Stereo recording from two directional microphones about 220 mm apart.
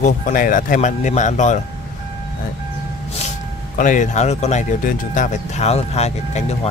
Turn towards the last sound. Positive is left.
turn(degrees=30)  # may be behind; listen again after turning